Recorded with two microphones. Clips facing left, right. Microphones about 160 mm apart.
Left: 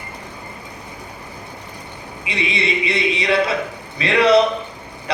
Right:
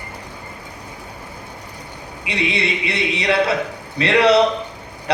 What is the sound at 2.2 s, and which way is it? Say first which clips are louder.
A man's voice: right 1 dB; 65° right (ahead or behind).